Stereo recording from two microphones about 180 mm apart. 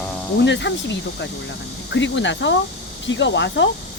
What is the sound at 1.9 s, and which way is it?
Speech, 90° left.